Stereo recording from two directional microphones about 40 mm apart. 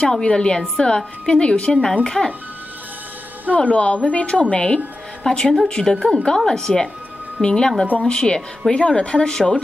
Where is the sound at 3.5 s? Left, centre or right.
Left.